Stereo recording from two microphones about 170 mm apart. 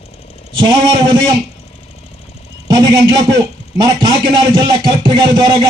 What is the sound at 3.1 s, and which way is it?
A man's voice, 25° right (ahead or behind).